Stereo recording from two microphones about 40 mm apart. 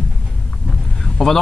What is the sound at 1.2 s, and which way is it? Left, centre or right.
Speech, centre.